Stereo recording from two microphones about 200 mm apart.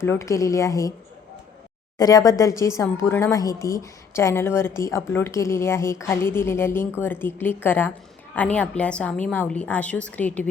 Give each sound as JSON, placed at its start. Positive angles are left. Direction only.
{"t": 0.0, "sound": "speech", "side_deg": 15}
{"t": 2.0, "sound": "speech", "side_deg": 20}